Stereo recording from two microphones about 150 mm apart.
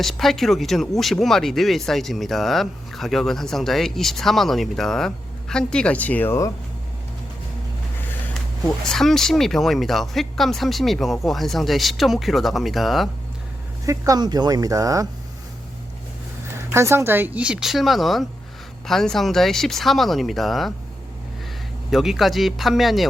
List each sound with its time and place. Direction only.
0.0 s speech: centre (ahead or behind)
8.3 s speech: 5° left (ahead or behind)
13.8 s speech: 20° right (ahead or behind)
16.6 s speech: 15° right (ahead or behind); by 20.7 s centre (ahead or behind)
21.8 s speech: centre (ahead or behind)